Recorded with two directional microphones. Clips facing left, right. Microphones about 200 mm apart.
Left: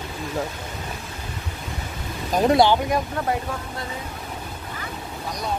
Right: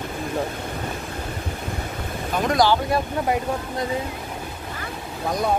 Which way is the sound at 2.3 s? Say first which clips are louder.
Left 3 dB; 30° left (ahead or behind).